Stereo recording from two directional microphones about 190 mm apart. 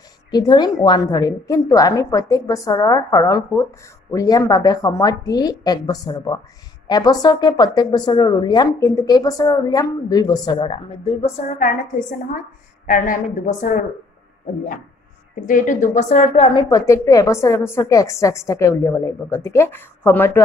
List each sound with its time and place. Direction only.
0.3 s a woman's voice: 20° left (ahead or behind); by 13.8 s 45° left (ahead or behind)
15.4 s a woman's voice: 45° left (ahead or behind)
16.6 s a woman's voice: 15° left (ahead or behind)